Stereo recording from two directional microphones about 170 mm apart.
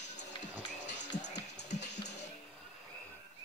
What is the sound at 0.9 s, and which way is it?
Music, 90° left.